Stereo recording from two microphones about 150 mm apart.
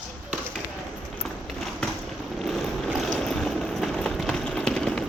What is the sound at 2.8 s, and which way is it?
Boat, centre (ahead or behind).